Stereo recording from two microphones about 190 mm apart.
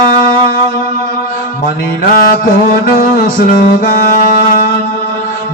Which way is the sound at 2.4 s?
50° left (ahead or behind).